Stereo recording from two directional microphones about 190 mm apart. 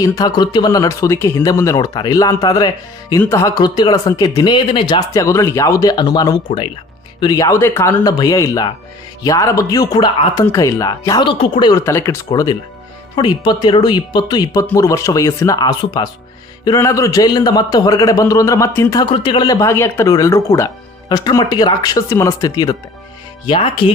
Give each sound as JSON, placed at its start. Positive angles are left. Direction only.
{"t": 0.0, "sound": "speech", "side_deg": 20}